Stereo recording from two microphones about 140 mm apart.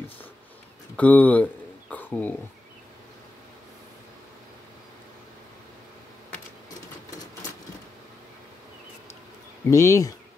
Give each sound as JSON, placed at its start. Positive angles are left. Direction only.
{"t": 0.9, "sound": "speech", "side_deg": 10}
{"t": 9.7, "sound": "speech", "side_deg": 20}